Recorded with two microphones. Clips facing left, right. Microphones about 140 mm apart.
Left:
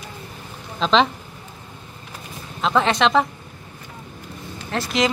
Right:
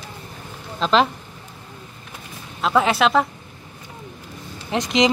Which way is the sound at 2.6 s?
5° right (ahead or behind).